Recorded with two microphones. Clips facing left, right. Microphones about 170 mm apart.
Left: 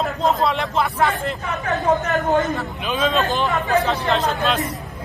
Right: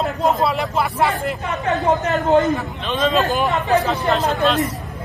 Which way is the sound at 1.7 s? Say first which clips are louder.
Right 1 dB; 20° right (ahead or behind).